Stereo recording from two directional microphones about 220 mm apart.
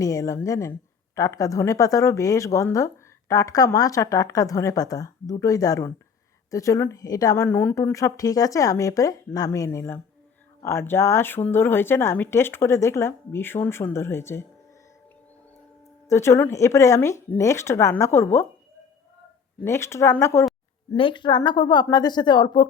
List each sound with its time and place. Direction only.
0.0 s a woman's voice: 15° left (ahead or behind)
16.0 s a woman's voice: 15° left (ahead or behind)
19.5 s a woman's voice: 10° left (ahead or behind)
20.9 s speech: 25° left (ahead or behind)